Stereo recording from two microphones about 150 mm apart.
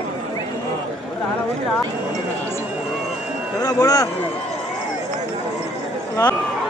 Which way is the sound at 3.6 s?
25° left (ahead or behind).